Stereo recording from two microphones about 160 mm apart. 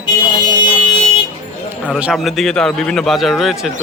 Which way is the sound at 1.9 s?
5° right (ahead or behind).